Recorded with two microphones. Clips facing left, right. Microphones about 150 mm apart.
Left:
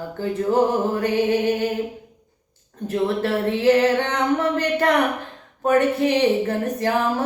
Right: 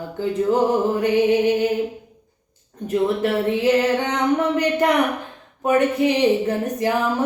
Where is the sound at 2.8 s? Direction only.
15° right (ahead or behind).